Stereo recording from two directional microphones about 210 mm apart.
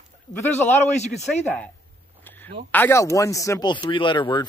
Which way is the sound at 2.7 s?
10° left (ahead or behind).